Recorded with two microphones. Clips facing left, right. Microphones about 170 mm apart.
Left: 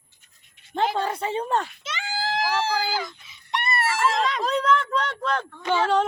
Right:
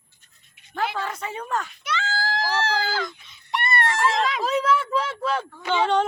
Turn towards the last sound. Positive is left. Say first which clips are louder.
# even
turn(degrees=5)  # may be behind; listen again after turning